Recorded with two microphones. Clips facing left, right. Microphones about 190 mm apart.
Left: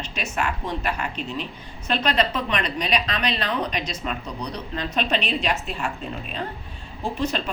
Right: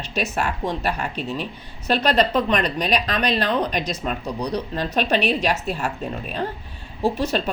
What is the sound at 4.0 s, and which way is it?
A woman's voice, 40° right (ahead or behind).